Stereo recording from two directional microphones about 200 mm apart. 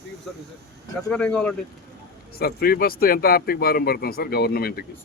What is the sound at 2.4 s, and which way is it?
Speech, 50° left (ahead or behind).